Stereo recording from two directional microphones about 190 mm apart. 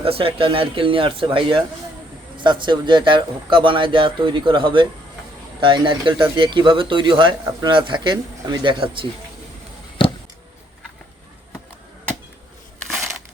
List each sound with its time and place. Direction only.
0.0 s speech: 30° right (ahead or behind)